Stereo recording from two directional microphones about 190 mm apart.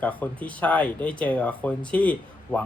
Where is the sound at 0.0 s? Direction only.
10° left (ahead or behind).